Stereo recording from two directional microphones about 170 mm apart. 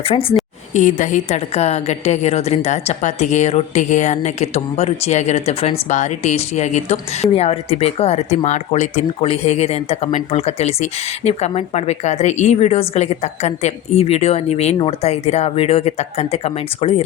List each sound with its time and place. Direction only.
0.0 s a woman's voice: 35° left (ahead or behind)
0.7 s a woman's voice: 45° left (ahead or behind)